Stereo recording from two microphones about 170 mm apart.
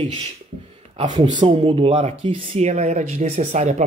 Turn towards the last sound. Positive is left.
turn(degrees=-45)  # may be behind; listen again after turning